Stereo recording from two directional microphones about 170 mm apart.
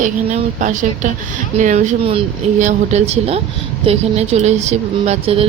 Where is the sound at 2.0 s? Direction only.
30° right (ahead or behind).